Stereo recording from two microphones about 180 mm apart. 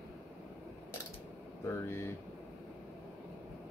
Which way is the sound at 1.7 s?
15° left (ahead or behind).